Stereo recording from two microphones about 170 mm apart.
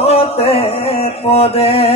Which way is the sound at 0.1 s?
35° left (ahead or behind).